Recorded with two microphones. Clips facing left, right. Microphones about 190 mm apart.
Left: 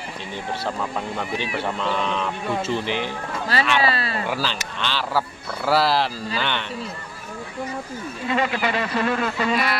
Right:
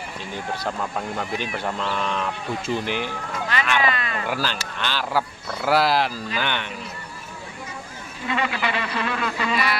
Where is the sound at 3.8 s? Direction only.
35° left (ahead or behind).